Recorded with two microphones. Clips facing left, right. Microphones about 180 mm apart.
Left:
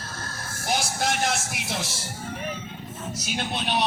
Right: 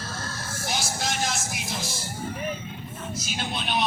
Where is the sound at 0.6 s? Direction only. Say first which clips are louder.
Left 4 dB; 55° left (ahead or behind).